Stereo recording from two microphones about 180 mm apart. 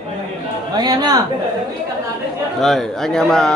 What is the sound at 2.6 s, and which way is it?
Speech, centre (ahead or behind).